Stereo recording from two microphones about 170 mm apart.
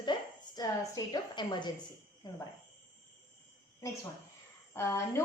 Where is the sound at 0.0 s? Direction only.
25° left (ahead or behind).